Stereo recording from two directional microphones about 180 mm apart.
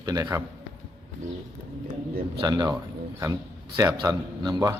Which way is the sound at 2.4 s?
20° right (ahead or behind).